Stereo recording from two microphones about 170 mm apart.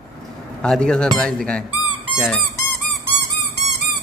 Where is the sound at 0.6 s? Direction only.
5° left (ahead or behind).